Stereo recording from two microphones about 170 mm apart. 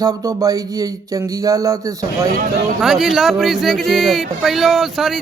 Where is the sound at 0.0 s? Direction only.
20° right (ahead or behind).